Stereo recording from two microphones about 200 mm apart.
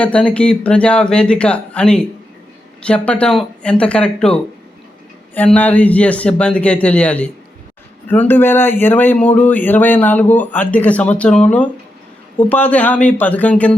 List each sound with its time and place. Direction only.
0.0 s speech: 5° left (ahead or behind)